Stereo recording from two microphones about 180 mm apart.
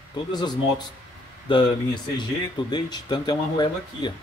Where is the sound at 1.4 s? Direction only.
25° left (ahead or behind).